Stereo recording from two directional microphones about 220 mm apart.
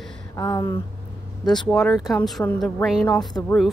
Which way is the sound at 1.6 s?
5° left (ahead or behind).